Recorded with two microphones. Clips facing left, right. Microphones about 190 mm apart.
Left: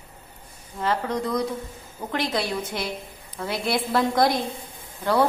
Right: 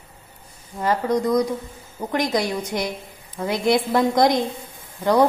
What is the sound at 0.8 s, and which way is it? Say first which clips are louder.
A woman's voice: right 5 dB; 10° right (ahead or behind).